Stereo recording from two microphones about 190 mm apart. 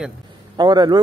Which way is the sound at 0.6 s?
20° right (ahead or behind).